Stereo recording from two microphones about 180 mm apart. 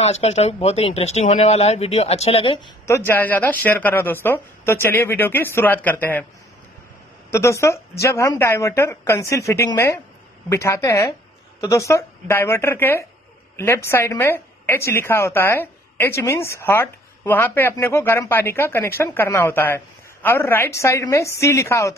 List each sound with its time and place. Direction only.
0.0 s speech: 35° left (ahead or behind)
3.1 s a woman's voice: 10° left (ahead or behind)
7.2 s a woman's voice: 15° left (ahead or behind)